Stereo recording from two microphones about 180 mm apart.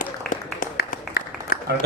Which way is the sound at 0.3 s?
50° left (ahead or behind).